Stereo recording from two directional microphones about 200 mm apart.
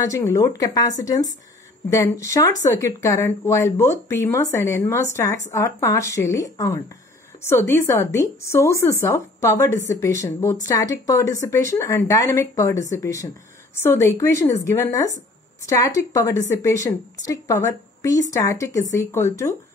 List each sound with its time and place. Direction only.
0.0 s speech: 15° left (ahead or behind)